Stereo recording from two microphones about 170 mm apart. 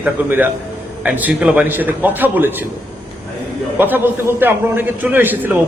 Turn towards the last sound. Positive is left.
turn(degrees=-10)  # may be behind; listen again after turning